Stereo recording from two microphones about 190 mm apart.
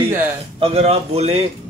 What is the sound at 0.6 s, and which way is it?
Speech, 30° right (ahead or behind).